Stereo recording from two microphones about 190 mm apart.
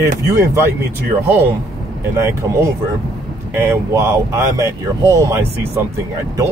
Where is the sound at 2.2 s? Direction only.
15° right (ahead or behind).